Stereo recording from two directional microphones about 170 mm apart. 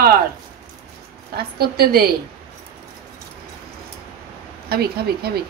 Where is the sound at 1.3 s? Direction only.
65° right (ahead or behind).